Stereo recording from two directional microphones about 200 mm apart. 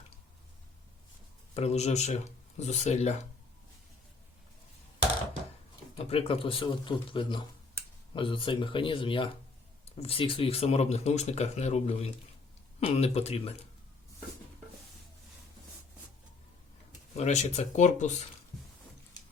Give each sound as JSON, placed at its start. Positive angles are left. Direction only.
{"t": 1.5, "sound": "speech", "side_deg": 30}
{"t": 6.1, "sound": "speech", "side_deg": 30}
{"t": 17.2, "sound": "speech", "side_deg": 35}